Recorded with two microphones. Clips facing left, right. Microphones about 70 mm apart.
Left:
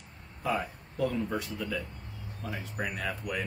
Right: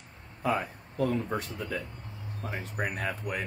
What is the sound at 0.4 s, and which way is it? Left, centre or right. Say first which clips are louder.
Speech: right 2 dB; right.